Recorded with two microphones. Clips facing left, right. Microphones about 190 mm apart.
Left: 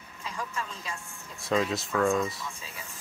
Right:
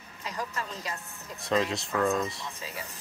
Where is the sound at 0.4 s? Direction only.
35° right (ahead or behind).